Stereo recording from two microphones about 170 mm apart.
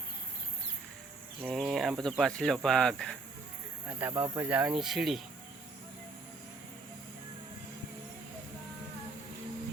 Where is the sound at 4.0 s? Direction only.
10° right (ahead or behind).